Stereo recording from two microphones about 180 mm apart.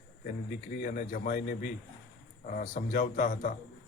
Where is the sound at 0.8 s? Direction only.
45° left (ahead or behind).